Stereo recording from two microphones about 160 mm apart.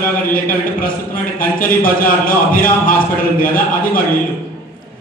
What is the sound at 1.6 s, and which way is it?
A man's voice, 60° left (ahead or behind).